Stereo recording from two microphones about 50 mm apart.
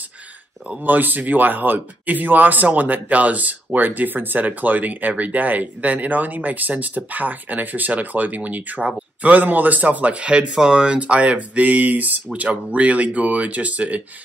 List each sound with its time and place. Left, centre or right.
0.7 s speech: right